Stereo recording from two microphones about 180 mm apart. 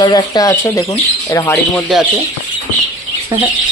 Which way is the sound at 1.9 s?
Centre (ahead or behind).